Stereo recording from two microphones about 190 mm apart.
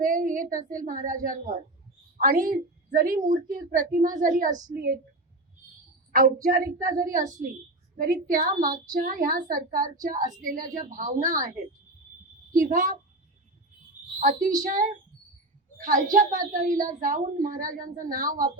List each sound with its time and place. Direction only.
0.0 s a woman's voice: 45° right (ahead or behind)
6.1 s a woman's voice: 45° right (ahead or behind)
14.2 s a woman's voice: 45° right (ahead or behind)